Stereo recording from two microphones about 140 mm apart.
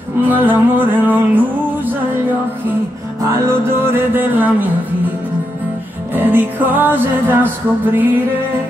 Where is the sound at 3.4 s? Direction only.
15° right (ahead or behind).